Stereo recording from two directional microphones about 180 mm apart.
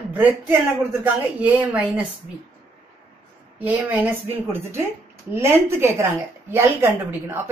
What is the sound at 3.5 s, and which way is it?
A woman's voice, 10° right (ahead or behind).